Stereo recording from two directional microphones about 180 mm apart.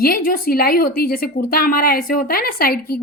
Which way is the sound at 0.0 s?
50° left (ahead or behind).